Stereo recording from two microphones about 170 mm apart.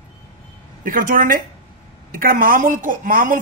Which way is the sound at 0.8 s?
55° right (ahead or behind).